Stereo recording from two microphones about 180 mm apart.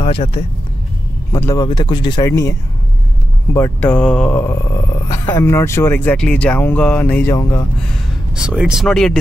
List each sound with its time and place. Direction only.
0.0 s speech: 30° left (ahead or behind)
1.3 s speech: 20° left (ahead or behind)
3.5 s speech: 10° left (ahead or behind)
8.4 s speech: 5° right (ahead or behind)